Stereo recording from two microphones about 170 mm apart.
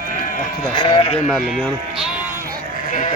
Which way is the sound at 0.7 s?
25° left (ahead or behind).